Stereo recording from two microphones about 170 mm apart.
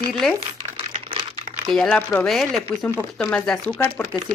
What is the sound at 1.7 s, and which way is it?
Speech, 5° left (ahead or behind).